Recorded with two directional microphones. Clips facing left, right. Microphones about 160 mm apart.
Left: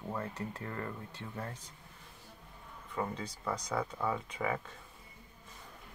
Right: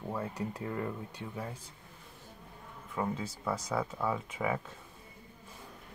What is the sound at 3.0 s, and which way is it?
Speech, 5° right (ahead or behind).